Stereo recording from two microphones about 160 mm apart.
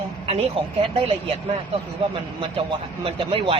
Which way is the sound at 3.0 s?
35° right (ahead or behind).